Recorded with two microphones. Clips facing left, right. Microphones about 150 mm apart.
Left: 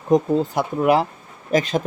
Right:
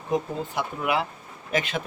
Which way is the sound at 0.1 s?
40° left (ahead or behind).